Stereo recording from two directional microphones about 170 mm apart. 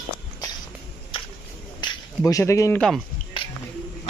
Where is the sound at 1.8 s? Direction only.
20° left (ahead or behind).